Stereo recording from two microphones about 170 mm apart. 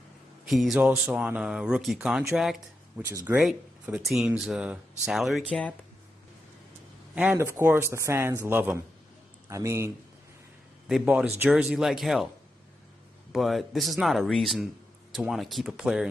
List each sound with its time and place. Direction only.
0.5 s speech: centre (ahead or behind)
3.0 s a man's voice: 15° right (ahead or behind)
3.3 s speech: 5° right (ahead or behind)
7.2 s a man's voice: 10° right (ahead or behind)
10.9 s speech: 5° right (ahead or behind)
13.3 s speech: centre (ahead or behind)